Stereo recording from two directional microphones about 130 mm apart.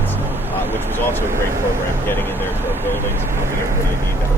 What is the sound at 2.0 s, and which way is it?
Speech, 15° left (ahead or behind).